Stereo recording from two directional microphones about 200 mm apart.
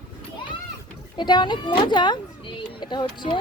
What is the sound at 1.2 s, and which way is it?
Speech, 20° left (ahead or behind).